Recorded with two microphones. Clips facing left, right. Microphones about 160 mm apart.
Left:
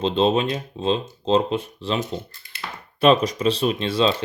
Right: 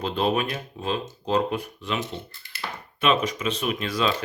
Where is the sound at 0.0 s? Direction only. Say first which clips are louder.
Left 5 dB; 25° left (ahead or behind).